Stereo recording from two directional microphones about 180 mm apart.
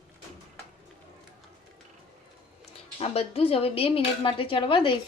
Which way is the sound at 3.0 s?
30° left (ahead or behind).